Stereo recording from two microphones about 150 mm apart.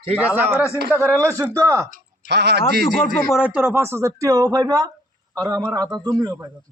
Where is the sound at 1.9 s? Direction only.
90° right.